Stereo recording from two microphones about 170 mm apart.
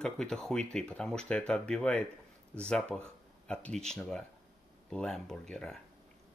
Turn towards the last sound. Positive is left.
turn(degrees=5)  # may be behind; listen again after turning